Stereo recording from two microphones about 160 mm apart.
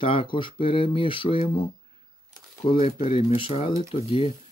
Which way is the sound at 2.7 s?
40° left (ahead or behind).